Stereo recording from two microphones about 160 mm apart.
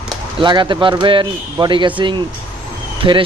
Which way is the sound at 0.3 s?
30° right (ahead or behind).